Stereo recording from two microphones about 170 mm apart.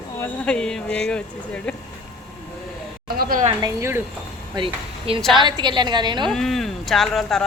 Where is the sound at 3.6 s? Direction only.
15° right (ahead or behind).